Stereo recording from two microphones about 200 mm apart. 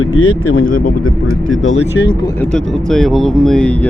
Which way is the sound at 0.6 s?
45° left (ahead or behind).